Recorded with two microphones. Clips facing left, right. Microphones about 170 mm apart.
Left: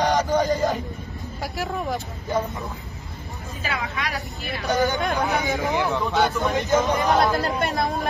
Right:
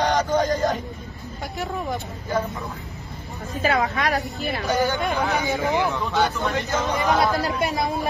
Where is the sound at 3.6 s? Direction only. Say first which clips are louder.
Right 8 dB; 45° right (ahead or behind).